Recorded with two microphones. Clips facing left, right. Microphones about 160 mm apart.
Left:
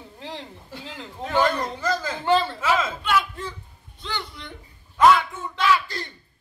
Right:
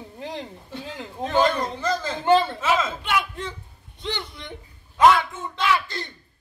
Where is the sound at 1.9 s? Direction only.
5° left (ahead or behind).